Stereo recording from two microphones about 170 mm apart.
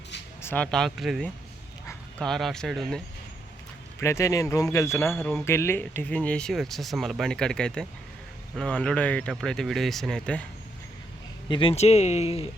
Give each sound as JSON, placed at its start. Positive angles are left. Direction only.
{"t": 0.4, "sound": "speech", "side_deg": 10}
{"t": 4.0, "sound": "speech", "side_deg": 15}
{"t": 11.4, "sound": "speech", "side_deg": 30}